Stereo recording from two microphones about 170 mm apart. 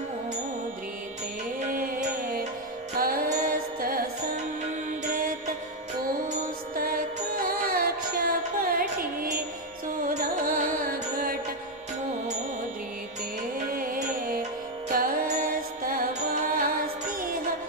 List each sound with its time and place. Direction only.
1.7 s music: 55° right (ahead or behind)
6.2 s music: 55° right (ahead or behind)
13.7 s music: 55° right (ahead or behind)